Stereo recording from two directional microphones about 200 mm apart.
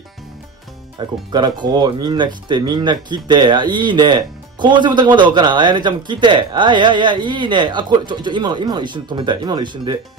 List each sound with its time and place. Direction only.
0.9 s speech: 20° right (ahead or behind)